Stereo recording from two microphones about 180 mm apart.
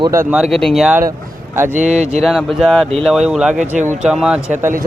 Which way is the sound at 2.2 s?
Centre (ahead or behind).